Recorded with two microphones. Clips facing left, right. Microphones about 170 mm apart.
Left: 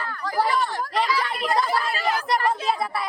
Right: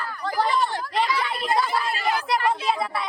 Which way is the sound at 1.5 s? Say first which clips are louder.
Even; centre (ahead or behind).